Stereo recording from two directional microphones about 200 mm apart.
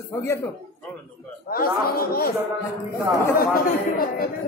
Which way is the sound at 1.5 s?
45° left (ahead or behind).